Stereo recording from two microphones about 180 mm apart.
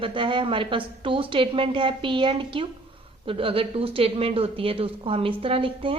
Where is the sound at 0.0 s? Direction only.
25° right (ahead or behind).